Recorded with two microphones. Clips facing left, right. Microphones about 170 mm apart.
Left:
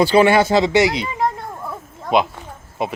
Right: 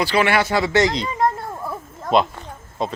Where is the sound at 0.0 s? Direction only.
25° left (ahead or behind).